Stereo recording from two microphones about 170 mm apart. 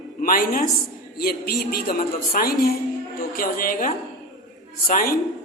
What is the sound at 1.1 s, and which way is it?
A woman's voice, 65° left (ahead or behind).